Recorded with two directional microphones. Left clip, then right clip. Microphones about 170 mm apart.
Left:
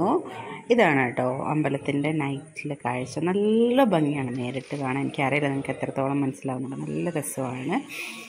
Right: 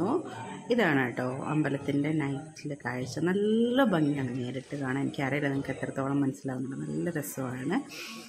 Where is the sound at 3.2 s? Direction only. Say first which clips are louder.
Left 5 dB; 5° left (ahead or behind).